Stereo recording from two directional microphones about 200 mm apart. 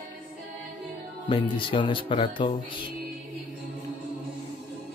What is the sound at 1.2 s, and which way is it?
Speech, 25° left (ahead or behind).